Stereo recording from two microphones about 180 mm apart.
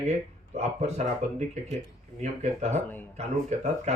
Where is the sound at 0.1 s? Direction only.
35° right (ahead or behind).